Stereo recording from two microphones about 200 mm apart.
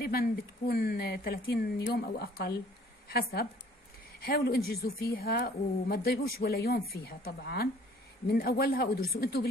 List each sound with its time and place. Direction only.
0.0 s a woman's voice: 50° left (ahead or behind)